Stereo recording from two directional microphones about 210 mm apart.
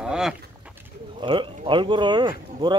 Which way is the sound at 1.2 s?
20° right (ahead or behind).